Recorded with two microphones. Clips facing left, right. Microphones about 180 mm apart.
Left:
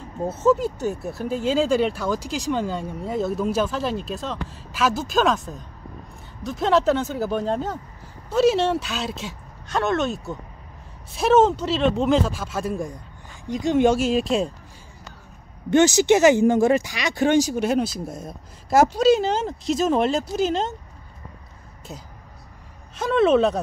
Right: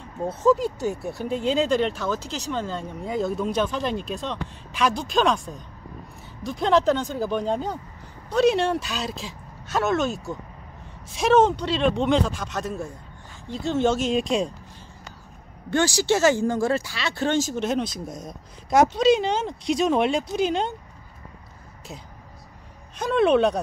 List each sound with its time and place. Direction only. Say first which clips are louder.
0.2 s speech: left 1 dB; centre (ahead or behind)
15.7 s speech: left 6 dB; 20° left (ahead or behind); by 20.7 s centre (ahead or behind)
22.9 s speech: left 1 dB; centre (ahead or behind)